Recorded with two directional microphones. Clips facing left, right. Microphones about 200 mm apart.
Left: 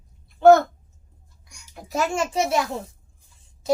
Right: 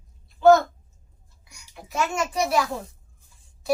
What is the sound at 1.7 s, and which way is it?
A child's voice, 35° left (ahead or behind).